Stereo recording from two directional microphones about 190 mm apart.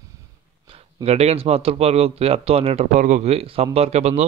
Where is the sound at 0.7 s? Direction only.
30° right (ahead or behind).